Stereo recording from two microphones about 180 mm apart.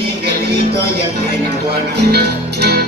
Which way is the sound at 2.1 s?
60° right (ahead or behind).